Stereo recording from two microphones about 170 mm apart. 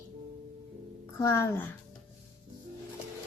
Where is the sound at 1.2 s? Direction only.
15° left (ahead or behind).